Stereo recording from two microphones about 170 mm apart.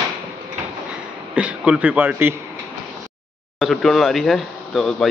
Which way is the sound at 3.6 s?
Centre (ahead or behind).